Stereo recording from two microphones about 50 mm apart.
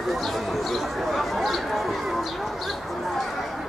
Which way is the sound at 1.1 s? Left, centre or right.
Centre.